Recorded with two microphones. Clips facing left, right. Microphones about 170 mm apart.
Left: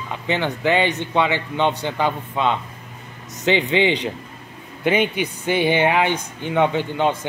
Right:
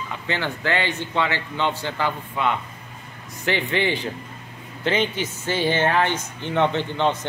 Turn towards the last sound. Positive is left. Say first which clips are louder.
# left 2 dB
turn(degrees=10)  # may be behind; listen again after turning